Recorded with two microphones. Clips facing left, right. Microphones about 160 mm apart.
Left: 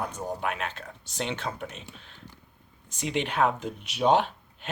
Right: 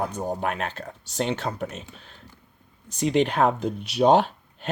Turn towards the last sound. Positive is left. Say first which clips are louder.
# right 4 dB
turn(degrees=-40)  # may be behind; listen again after turning